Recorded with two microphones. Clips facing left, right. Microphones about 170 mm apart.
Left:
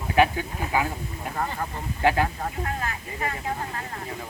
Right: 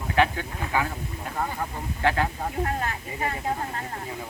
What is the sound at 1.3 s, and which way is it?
Speech, 5° right (ahead or behind).